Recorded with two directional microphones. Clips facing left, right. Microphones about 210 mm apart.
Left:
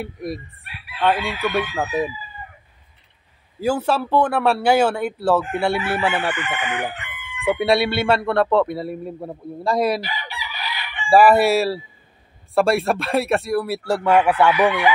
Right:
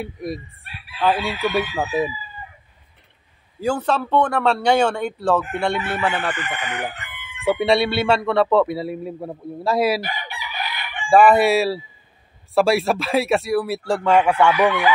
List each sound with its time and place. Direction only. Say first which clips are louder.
0.0 s speech: even; centre (ahead or behind)
3.6 s speech: left 1 dB; 10° left (ahead or behind)
6.3 s chicken: left 2 dB; 35° right (ahead or behind)
7.4 s speech: even; centre (ahead or behind)
10.0 s chicken: right 1 dB; 50° right (ahead or behind)
11.1 s speech: even; 5° left (ahead or behind)